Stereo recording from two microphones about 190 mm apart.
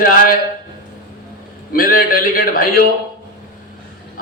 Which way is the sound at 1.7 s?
50° left (ahead or behind).